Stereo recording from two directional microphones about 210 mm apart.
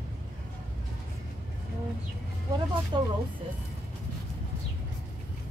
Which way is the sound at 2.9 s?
20° right (ahead or behind).